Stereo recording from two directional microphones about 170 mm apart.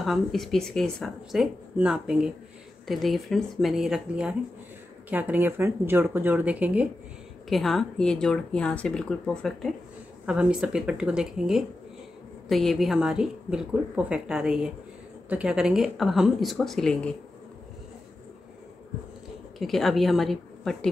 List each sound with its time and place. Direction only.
0.0 s speech: centre (ahead or behind)
19.6 s speech: centre (ahead or behind)